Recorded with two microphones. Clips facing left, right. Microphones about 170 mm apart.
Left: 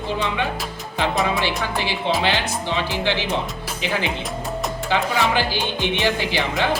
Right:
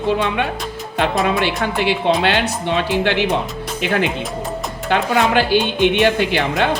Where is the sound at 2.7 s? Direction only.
60° right (ahead or behind).